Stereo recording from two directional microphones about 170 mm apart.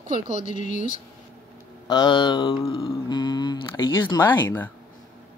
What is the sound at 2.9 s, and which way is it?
Speech, 25° left (ahead or behind).